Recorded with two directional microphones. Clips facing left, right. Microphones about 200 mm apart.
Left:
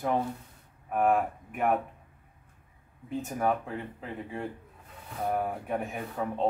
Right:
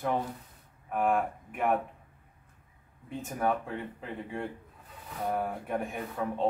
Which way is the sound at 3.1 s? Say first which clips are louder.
Left 2 dB; centre (ahead or behind).